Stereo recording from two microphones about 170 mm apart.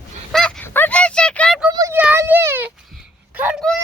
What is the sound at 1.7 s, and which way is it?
A child's voice, 20° right (ahead or behind).